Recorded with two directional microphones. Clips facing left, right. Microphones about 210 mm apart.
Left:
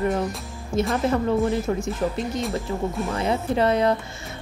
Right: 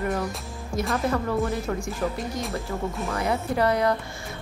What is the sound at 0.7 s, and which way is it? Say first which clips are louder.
Speech: left 5 dB; 5° left (ahead or behind).